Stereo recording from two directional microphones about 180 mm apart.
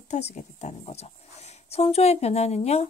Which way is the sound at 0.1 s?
40° left (ahead or behind).